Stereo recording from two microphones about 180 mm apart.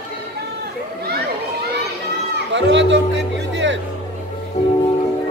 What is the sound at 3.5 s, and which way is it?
Music, 90° right.